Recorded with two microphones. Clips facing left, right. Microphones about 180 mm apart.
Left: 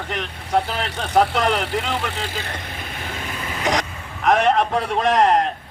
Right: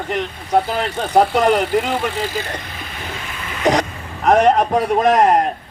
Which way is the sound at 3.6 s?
35° right (ahead or behind).